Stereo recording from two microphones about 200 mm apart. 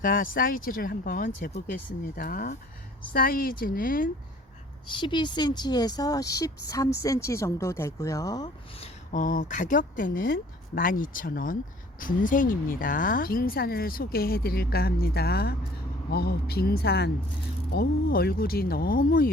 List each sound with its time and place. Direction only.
0.0 s a woman's voice: 45° left (ahead or behind)
4.9 s a woman's voice: 25° left (ahead or behind)
8.8 s a woman's voice: 40° left (ahead or behind)